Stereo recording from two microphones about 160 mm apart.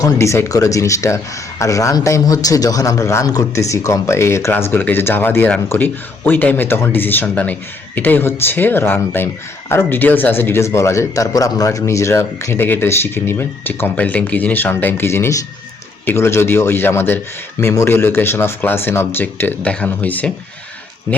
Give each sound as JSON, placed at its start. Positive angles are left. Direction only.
{"t": 0.0, "sound": "speech", "side_deg": 15}